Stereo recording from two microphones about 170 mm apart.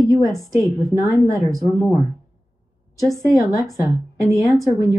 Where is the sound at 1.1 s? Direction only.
20° right (ahead or behind).